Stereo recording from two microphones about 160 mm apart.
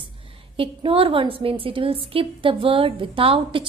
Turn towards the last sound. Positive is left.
turn(degrees=-35)  # may be behind; listen again after turning